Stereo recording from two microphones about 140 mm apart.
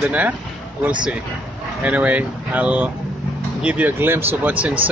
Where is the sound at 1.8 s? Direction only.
10° right (ahead or behind).